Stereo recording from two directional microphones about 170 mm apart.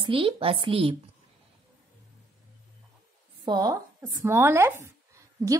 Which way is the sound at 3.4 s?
25° right (ahead or behind).